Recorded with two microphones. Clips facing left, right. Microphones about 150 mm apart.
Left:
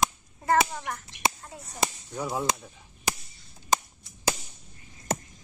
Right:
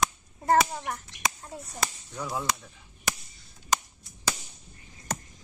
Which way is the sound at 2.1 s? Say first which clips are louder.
Left 3 dB; 20° left (ahead or behind).